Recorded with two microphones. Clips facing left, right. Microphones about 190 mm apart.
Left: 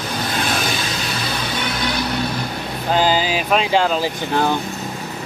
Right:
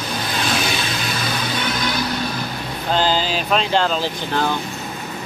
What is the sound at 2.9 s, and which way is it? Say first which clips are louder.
Speech: left 2 dB; 10° left (ahead or behind).